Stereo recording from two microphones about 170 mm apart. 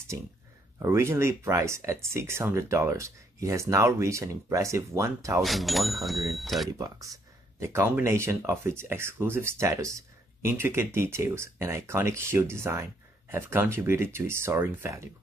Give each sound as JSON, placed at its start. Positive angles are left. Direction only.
{"t": 0.7, "sound": "speech", "side_deg": -15}
{"t": 5.4, "sound": "speech", "side_deg": 0}
{"t": 7.6, "sound": "speech", "side_deg": -15}